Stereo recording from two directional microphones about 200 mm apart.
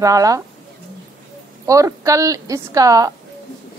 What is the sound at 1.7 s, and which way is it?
Speech, 15° right (ahead or behind).